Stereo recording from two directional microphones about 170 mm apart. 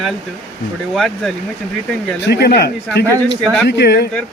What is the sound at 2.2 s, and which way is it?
Speech, 75° left (ahead or behind).